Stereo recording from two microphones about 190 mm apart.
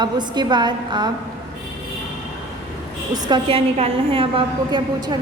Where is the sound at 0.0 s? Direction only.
25° right (ahead or behind).